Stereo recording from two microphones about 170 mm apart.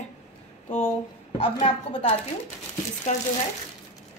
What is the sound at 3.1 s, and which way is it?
Speech, 45° left (ahead or behind).